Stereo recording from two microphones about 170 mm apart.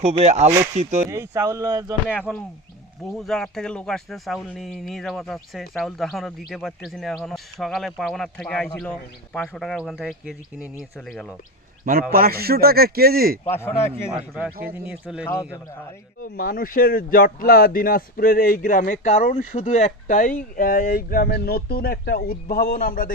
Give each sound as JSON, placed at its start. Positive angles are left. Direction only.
{"t": 0.0, "sound": "speech", "side_deg": -40}
{"t": 1.0, "sound": "speech", "side_deg": -15}
{"t": 2.0, "sound": "speech", "side_deg": 10}
{"t": 12.1, "sound": "speech", "side_deg": -60}
{"t": 13.5, "sound": "speech", "side_deg": 15}
{"t": 14.3, "sound": "speech", "side_deg": -5}
{"t": 16.4, "sound": "speech", "side_deg": 60}